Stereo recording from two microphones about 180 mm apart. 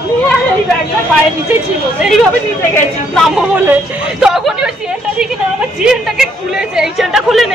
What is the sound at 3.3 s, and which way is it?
Speech, 5° right (ahead or behind).